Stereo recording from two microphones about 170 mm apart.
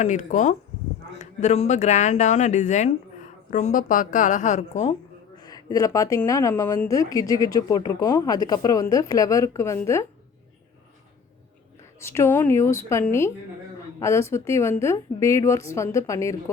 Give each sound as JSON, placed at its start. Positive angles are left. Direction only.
{"t": 0.0, "sound": "speech", "side_deg": 45}
{"t": 5.4, "sound": "speech", "side_deg": 20}
{"t": 11.9, "sound": "a woman's voice", "side_deg": 15}